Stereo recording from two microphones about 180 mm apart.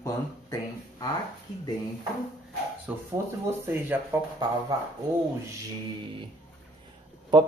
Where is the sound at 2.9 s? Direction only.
10° right (ahead or behind).